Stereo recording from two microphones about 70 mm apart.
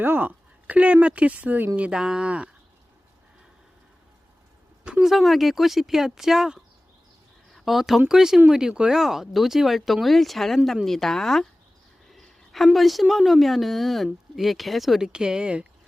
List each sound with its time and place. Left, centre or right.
0.0 s speech: right
1.9 s speech: centre
4.8 s a sound: right
5.0 s a woman's voice: centre